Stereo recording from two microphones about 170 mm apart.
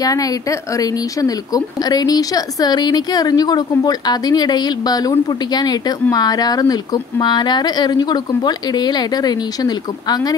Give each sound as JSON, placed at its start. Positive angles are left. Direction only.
{"t": 0.0, "sound": "a woman's voice", "side_deg": 20}